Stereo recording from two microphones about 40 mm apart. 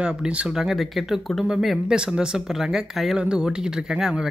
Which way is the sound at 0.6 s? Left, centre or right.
Centre.